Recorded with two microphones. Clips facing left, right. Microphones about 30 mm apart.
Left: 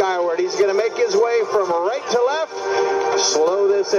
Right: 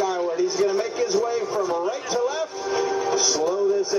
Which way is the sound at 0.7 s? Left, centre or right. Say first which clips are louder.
Left 5 dB; left.